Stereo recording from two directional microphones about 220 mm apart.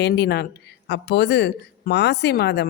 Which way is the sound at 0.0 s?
50° left (ahead or behind).